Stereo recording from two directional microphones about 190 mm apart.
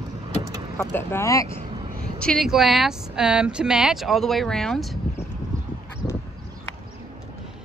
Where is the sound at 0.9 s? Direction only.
15° left (ahead or behind).